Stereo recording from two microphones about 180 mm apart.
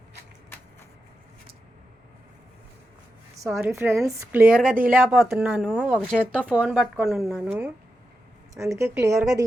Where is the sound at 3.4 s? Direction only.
10° right (ahead or behind).